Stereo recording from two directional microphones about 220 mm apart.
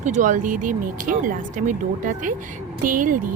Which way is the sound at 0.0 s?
35° right (ahead or behind).